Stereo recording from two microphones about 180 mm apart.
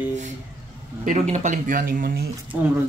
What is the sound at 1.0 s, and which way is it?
Speech, 40° right (ahead or behind).